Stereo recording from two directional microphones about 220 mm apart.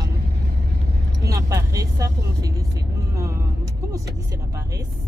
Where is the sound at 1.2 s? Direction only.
15° right (ahead or behind).